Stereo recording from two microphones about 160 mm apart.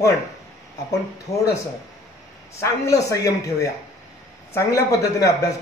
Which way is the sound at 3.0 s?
20° left (ahead or behind).